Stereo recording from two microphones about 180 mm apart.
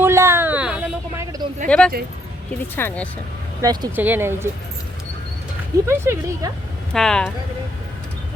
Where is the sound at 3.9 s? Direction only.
10° right (ahead or behind).